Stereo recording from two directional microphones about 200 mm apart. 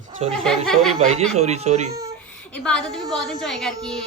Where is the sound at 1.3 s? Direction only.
35° right (ahead or behind).